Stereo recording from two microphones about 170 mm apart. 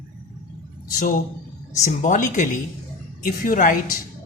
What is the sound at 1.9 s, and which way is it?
Speech, 50° left (ahead or behind).